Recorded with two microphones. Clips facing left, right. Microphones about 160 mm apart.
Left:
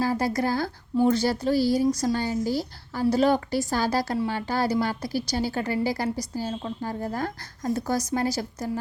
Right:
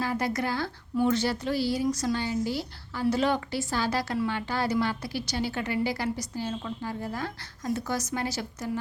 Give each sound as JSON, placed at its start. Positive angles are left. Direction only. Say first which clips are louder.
{"t": 0.0, "sound": "a woman's voice", "louder": "left 4 dB", "side_deg": 35}